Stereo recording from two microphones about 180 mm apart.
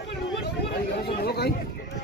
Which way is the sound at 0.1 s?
65° left (ahead or behind).